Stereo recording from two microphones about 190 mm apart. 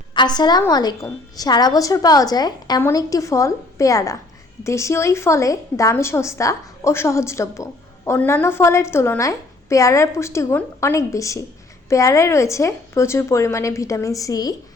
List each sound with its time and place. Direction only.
0.1 s a woman's voice: 25° left (ahead or behind)